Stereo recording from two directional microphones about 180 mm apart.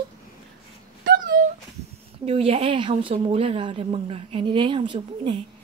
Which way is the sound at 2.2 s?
35° right (ahead or behind).